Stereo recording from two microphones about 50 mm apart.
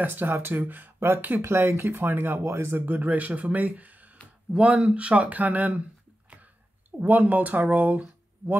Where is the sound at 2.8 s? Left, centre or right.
Right.